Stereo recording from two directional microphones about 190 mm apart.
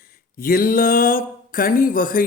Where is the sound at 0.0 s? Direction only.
50° left (ahead or behind).